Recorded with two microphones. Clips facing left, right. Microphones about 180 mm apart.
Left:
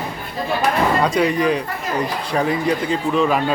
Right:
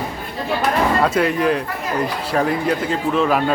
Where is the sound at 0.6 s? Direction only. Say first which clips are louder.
Even; 5° right (ahead or behind).